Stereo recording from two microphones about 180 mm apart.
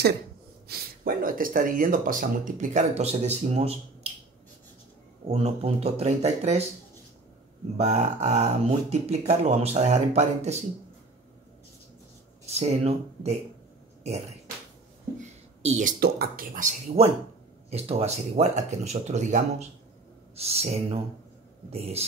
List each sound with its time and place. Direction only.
0.7 s speech: 55° right (ahead or behind); by 4.1 s 35° right (ahead or behind)
5.3 s speech: 35° right (ahead or behind)
7.7 s speech: 40° right (ahead or behind)
12.4 s speech: 35° right (ahead or behind)
15.1 s a sound: 40° right (ahead or behind)
16.0 s speech: 55° right (ahead or behind); by 22.0 s 35° right (ahead or behind)